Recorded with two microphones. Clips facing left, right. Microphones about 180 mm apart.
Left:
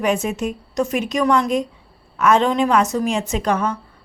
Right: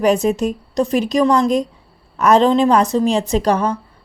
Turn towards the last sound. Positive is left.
turn(degrees=-35)  # may be behind; listen again after turning